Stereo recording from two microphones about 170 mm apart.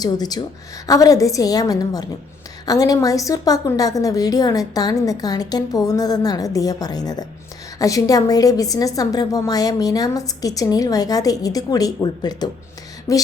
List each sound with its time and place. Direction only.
0.0 s a woman's voice: 25° left (ahead or behind)